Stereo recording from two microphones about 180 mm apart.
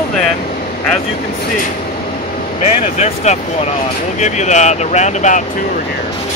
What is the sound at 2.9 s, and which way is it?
Speech, 40° left (ahead or behind).